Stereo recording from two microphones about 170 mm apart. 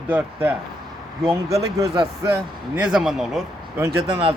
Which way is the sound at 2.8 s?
5° right (ahead or behind).